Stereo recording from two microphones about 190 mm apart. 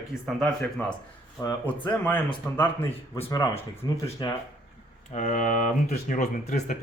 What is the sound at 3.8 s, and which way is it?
Speech, 20° left (ahead or behind).